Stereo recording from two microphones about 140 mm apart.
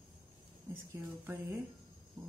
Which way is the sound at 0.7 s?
15° right (ahead or behind).